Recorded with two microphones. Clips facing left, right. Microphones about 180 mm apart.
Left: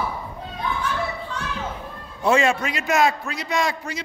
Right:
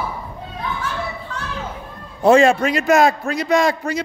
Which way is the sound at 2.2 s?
40° right (ahead or behind).